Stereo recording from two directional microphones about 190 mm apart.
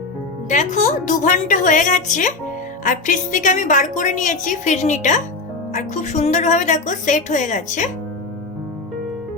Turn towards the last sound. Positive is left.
turn(degrees=40)  # may be behind; listen again after turning